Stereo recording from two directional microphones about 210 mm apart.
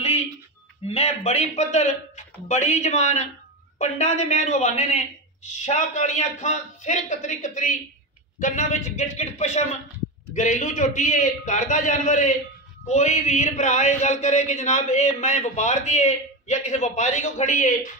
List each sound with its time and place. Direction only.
0.8 s speech: 30° left (ahead or behind)